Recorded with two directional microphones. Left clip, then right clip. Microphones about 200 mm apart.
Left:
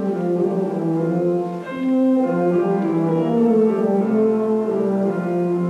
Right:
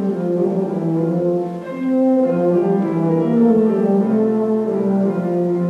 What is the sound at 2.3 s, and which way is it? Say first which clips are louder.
Music: right 2 dB; 30° left (ahead or behind).